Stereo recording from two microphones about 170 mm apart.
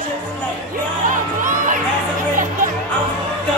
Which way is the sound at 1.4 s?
50° right (ahead or behind).